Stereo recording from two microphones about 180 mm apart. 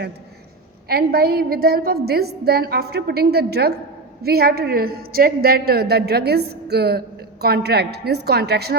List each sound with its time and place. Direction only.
0.9 s a woman's voice: 60° right (ahead or behind)